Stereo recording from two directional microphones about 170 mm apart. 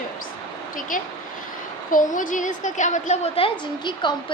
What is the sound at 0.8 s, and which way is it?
Speech, 50° left (ahead or behind).